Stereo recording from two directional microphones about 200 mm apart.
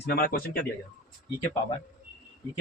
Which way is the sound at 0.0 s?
50° left (ahead or behind).